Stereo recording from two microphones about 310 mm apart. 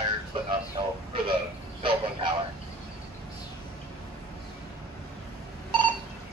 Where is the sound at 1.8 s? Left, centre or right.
Centre.